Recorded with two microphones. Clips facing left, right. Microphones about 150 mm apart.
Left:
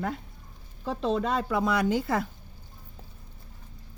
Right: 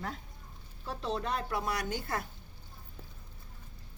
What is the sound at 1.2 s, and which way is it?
Speech, 90° left.